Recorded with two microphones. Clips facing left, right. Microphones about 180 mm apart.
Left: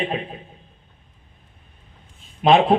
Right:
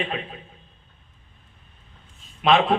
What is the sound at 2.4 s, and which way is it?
Speech, 40° left (ahead or behind).